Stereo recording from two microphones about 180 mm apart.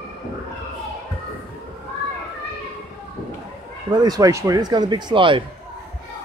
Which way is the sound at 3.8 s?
20° right (ahead or behind).